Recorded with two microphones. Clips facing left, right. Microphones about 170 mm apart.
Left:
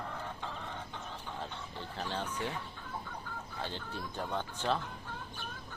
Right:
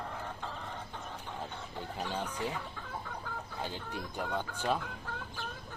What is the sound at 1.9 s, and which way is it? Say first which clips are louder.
Speech: right 1 dB; 10° right (ahead or behind).